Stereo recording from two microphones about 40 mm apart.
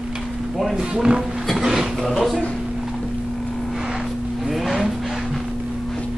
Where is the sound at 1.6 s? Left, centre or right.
Centre.